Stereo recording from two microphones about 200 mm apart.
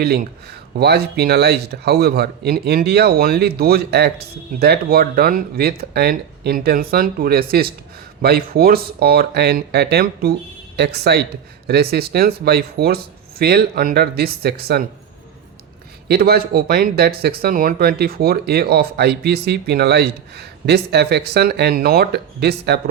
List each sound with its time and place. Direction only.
0.0 s speech: 50° right (ahead or behind)
16.0 s speech: 50° right (ahead or behind)